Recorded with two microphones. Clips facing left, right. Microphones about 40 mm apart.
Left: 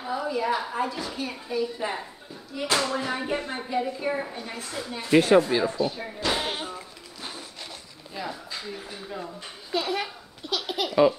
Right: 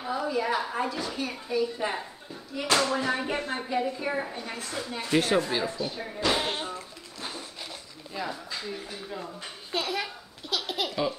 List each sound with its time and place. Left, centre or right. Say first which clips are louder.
0.0 s a woman's voice: left 1 dB; centre
5.1 s speech: left 6 dB; left
5.4 s speech: left 5 dB; centre
5.7 s speech: left 5 dB; centre
6.2 s sheep: right 1 dB; centre
8.1 s speech: even; centre
9.8 s speech: left 3 dB; centre
10.0 s laughter: left 2 dB; centre